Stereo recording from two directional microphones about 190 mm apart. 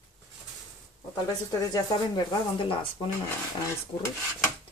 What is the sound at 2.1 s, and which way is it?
Speech, 25° left (ahead or behind).